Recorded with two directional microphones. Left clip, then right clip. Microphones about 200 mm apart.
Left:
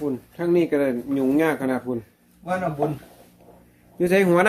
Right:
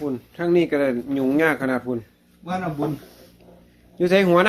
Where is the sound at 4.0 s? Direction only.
15° left (ahead or behind).